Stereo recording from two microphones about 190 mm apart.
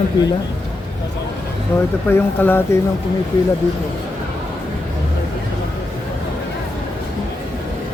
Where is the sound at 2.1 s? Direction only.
10° left (ahead or behind).